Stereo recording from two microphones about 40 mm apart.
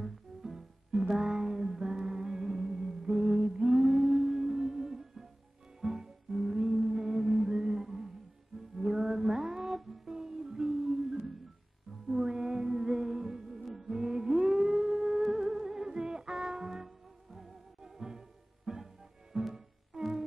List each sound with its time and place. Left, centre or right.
0.0 s music: centre